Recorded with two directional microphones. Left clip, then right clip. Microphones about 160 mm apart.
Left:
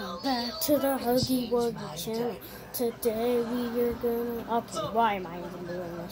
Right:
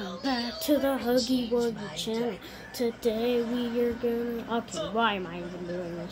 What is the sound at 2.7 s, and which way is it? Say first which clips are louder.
Female singing: even; 25° right (ahead or behind).